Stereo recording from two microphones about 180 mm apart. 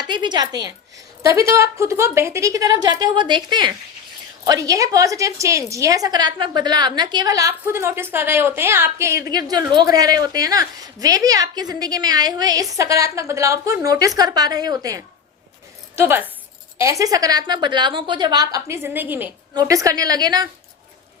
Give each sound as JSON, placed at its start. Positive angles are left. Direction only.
{"t": 0.0, "sound": "a woman's voice", "side_deg": -25}